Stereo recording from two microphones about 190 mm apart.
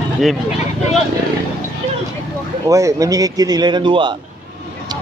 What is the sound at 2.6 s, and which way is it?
Speech, 15° right (ahead or behind).